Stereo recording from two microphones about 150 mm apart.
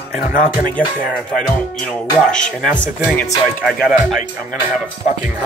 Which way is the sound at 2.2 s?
5° left (ahead or behind).